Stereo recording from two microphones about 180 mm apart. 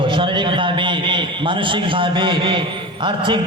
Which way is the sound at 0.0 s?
25° right (ahead or behind).